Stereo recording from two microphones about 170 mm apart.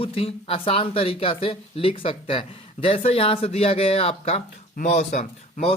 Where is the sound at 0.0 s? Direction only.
35° left (ahead or behind).